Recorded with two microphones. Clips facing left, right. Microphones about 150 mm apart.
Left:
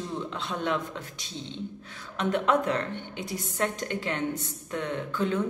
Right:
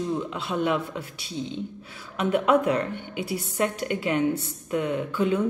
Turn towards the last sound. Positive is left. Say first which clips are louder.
# right 4 dB
turn(degrees=-10)  # may be behind; listen again after turning